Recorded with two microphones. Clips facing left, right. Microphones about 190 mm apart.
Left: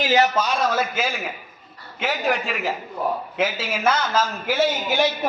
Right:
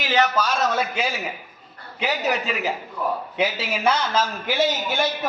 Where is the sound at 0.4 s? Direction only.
5° left (ahead or behind).